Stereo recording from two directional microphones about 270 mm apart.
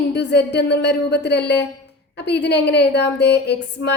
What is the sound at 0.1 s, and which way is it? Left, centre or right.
A woman's voice, left.